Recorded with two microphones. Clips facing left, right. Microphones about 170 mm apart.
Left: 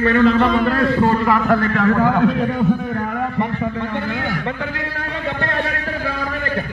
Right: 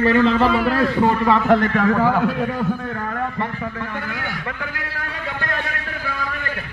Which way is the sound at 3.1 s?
20° left (ahead or behind).